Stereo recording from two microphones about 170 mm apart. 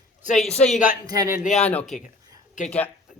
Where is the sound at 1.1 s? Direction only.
20° right (ahead or behind).